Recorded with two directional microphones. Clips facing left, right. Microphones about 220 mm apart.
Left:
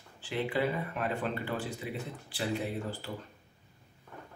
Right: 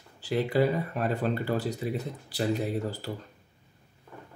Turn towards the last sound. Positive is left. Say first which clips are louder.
# right 5 dB
turn(degrees=-40)  # may be behind; listen again after turning